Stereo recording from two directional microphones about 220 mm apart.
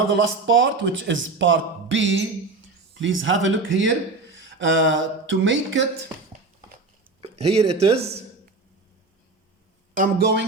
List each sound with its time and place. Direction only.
0.1 s speech: 55° right (ahead or behind)
7.2 s speech: 30° right (ahead or behind)
9.9 s speech: 40° right (ahead or behind)